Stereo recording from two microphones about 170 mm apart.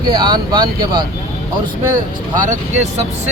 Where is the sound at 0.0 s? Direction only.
25° right (ahead or behind).